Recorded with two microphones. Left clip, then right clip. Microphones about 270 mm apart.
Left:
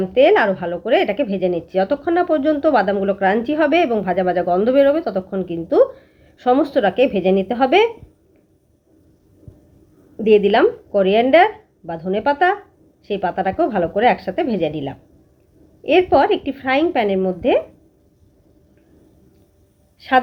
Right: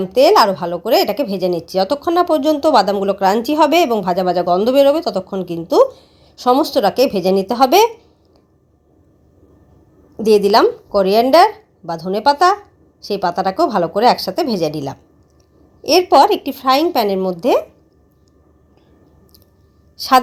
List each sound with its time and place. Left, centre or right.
0.0 s speech: right
10.2 s speech: right
20.0 s speech: right